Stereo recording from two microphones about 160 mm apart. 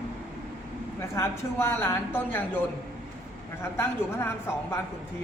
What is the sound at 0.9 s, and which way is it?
Speech, 15° left (ahead or behind).